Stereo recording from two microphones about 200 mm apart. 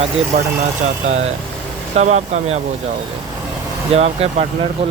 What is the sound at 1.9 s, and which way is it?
Speech, 35° right (ahead or behind).